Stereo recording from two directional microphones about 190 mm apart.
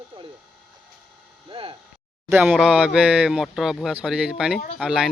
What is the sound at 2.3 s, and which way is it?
Speech, 10° right (ahead or behind).